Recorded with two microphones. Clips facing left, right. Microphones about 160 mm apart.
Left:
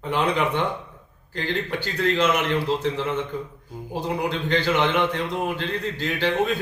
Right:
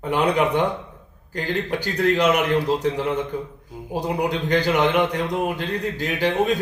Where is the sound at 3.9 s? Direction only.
40° right (ahead or behind).